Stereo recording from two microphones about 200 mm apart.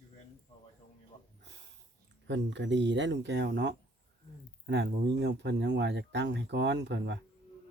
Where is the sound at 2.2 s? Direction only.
65° right (ahead or behind).